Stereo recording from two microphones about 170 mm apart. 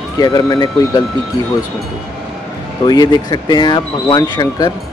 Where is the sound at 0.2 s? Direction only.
25° left (ahead or behind).